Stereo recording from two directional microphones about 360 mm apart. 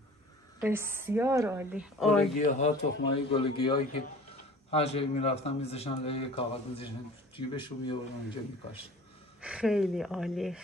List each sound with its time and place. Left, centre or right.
0.6 s a woman's voice: centre
2.3 s a man's voice: centre
9.4 s speech: centre